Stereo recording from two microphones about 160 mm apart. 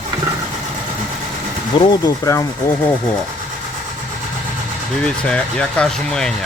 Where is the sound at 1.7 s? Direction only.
25° left (ahead or behind).